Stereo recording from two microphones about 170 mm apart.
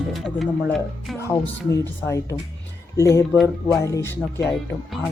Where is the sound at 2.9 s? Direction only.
15° left (ahead or behind).